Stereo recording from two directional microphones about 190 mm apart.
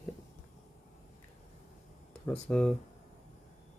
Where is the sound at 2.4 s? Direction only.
5° left (ahead or behind).